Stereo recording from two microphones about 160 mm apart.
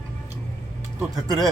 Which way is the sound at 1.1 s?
25° right (ahead or behind).